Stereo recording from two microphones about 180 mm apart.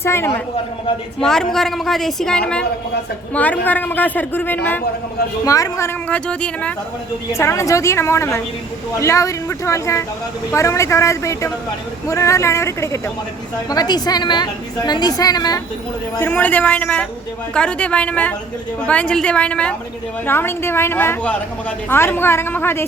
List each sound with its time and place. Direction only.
0.0 s speech: 15° left (ahead or behind)
1.2 s a woman's voice: 5° left (ahead or behind); by 15.6 s 20° left (ahead or behind)
16.1 s speech: 10° left (ahead or behind)